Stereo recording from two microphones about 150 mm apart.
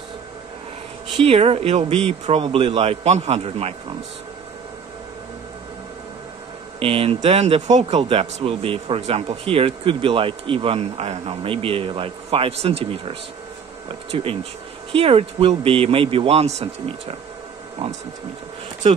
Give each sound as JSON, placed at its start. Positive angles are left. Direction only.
{"t": 1.2, "sound": "speech", "side_deg": -40}
{"t": 6.8, "sound": "speech", "side_deg": -40}